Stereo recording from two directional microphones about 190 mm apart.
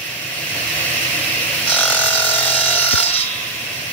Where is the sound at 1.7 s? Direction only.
10° left (ahead or behind).